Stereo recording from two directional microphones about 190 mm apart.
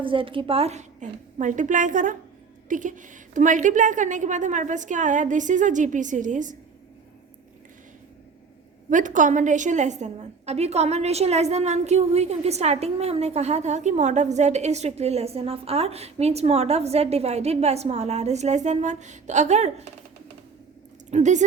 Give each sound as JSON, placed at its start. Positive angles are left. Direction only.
{"t": 0.0, "sound": "a woman's voice", "side_deg": -25}
{"t": 8.9, "sound": "a woman's voice", "side_deg": -40}
{"t": 21.1, "sound": "a woman's voice", "side_deg": -40}